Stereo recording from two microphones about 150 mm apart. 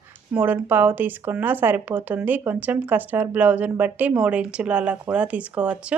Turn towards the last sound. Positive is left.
turn(degrees=-5)  # may be behind; listen again after turning